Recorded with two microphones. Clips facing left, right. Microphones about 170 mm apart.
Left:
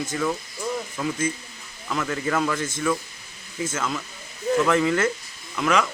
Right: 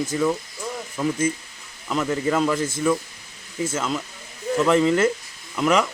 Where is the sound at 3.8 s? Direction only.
15° right (ahead or behind).